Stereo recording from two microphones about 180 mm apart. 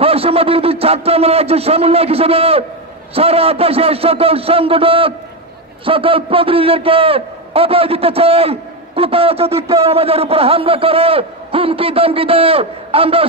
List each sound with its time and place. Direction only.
0.0 s a man's voice: 30° right (ahead or behind)